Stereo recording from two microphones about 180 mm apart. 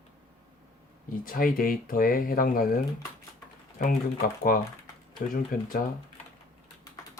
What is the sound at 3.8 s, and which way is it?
Speech, 50° left (ahead or behind).